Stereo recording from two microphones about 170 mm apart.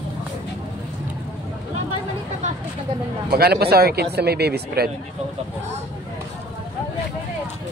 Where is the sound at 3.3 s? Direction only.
65° right (ahead or behind).